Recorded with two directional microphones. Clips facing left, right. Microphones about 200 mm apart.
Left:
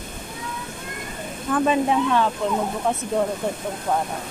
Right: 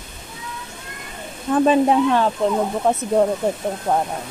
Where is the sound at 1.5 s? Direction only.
35° right (ahead or behind).